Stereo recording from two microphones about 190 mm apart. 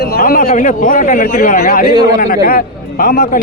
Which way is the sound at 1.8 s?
20° right (ahead or behind).